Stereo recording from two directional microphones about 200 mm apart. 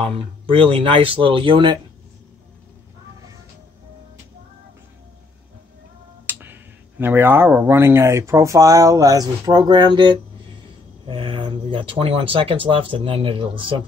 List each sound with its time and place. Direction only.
0.0 s speech: 30° right (ahead or behind)
6.2 s speech: 10° right (ahead or behind); by 13.7 s 25° right (ahead or behind)